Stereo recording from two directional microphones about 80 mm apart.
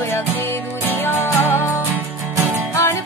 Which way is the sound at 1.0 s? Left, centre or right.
Left.